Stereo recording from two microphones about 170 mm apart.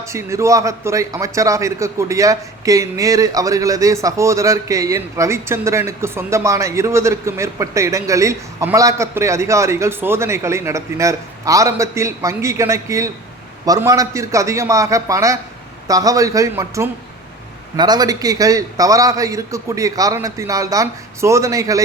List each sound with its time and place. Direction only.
0.0 s a man's voice: 15° right (ahead or behind)